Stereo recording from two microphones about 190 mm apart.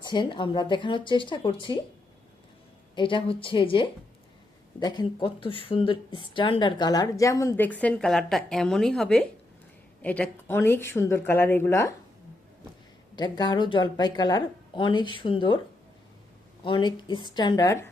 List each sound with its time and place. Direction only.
0.0 s speech: 25° left (ahead or behind)
2.9 s speech: 25° left (ahead or behind)
13.1 s speech: 20° left (ahead or behind)
16.6 s speech: 25° left (ahead or behind)